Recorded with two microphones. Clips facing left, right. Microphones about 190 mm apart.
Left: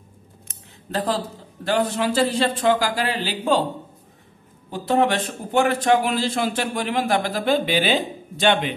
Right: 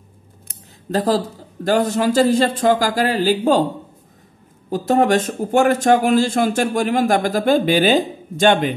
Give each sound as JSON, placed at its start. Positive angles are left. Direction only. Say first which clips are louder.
{"t": 0.5, "sound": "speech", "louder": "right 7 dB", "side_deg": -40}
{"t": 4.6, "sound": "a man's voice", "louder": "right 4 dB", "side_deg": -45}